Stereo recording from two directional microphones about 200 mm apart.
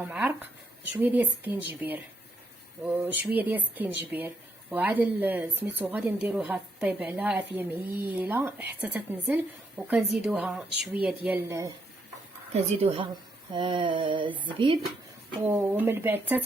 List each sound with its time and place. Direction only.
0.0 s a woman's voice: 5° right (ahead or behind)
12.5 s a sound: 30° right (ahead or behind)
15.4 s a woman's voice: 10° right (ahead or behind)